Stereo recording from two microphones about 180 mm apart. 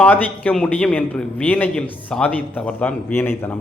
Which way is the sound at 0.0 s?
10° left (ahead or behind).